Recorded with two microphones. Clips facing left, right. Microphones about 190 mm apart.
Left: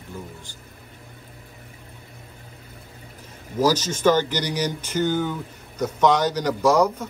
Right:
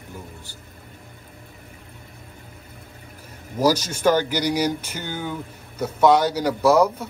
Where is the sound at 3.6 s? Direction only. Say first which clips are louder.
Even; 10° right (ahead or behind).